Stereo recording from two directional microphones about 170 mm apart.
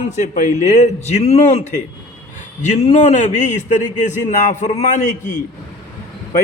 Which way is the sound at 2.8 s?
40° left (ahead or behind).